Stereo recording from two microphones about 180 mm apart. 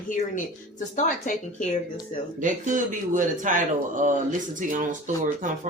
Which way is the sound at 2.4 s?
45° right (ahead or behind).